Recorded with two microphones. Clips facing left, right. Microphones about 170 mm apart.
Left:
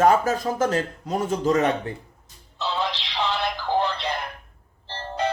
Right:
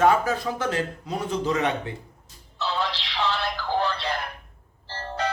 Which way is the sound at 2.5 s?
15° left (ahead or behind).